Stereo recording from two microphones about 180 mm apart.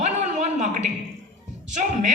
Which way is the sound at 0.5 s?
40° right (ahead or behind).